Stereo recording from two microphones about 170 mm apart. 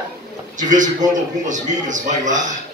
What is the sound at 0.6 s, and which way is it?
A man's voice, 50° right (ahead or behind).